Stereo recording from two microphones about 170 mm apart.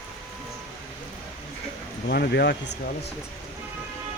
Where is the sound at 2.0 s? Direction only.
70° left (ahead or behind).